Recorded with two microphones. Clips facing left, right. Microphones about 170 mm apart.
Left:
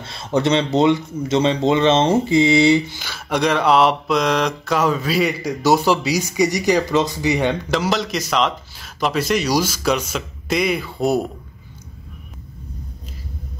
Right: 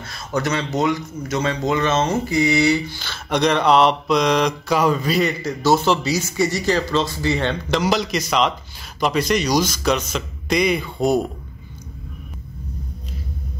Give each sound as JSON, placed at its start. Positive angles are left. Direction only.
{"t": 0.0, "sound": "speech", "side_deg": 25}
{"t": 3.0, "sound": "mantra", "side_deg": 10}
{"t": 7.7, "sound": "speech", "side_deg": 0}